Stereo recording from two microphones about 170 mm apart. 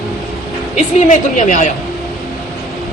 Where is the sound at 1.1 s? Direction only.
45° left (ahead or behind).